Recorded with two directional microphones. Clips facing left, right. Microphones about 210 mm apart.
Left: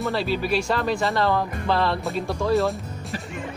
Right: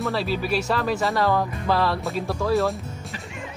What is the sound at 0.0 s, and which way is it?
Speech, centre (ahead or behind).